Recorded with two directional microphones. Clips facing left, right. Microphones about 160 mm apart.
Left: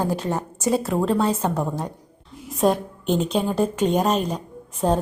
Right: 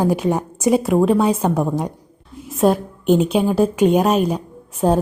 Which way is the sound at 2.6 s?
5° right (ahead or behind).